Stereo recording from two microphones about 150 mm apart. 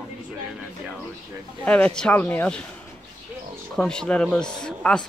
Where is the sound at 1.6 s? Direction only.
10° left (ahead or behind).